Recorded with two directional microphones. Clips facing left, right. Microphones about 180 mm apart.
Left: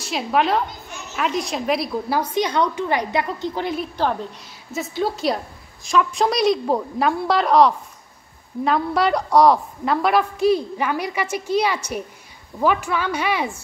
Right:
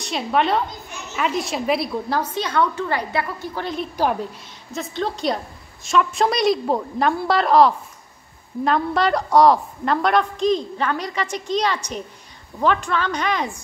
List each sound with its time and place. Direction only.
0.0 s a woman's voice: centre (ahead or behind)
2.0 s a woman's voice: 10° left (ahead or behind)
3.9 s a woman's voice: 10° right (ahead or behind)
4.7 s a woman's voice: 5° left (ahead or behind)